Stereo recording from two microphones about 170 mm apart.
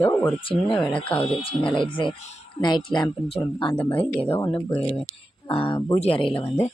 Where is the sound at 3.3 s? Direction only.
30° left (ahead or behind).